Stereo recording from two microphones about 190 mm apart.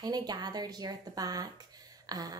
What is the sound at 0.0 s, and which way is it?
A woman's voice, 20° right (ahead or behind).